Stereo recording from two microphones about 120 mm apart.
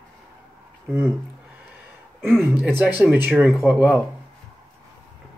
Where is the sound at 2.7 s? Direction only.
15° right (ahead or behind).